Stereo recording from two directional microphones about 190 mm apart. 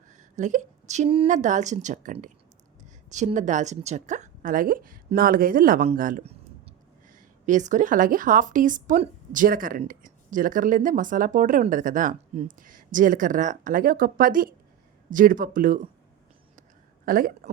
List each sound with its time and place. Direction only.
0.1 s a sound: 40° right (ahead or behind)
1.3 s a woman's voice: 40° right (ahead or behind)
17.1 s speech: 45° right (ahead or behind)